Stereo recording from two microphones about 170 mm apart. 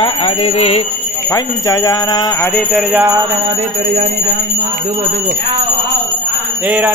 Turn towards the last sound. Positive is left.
turn(degrees=-10)  # may be behind; listen again after turning